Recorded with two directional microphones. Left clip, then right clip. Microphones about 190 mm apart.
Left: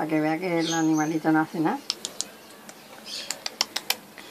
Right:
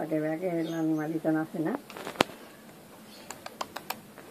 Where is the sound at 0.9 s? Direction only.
40° left (ahead or behind).